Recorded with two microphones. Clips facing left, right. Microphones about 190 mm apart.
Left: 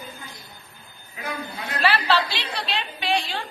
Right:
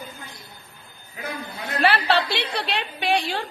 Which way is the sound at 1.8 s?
60° right (ahead or behind).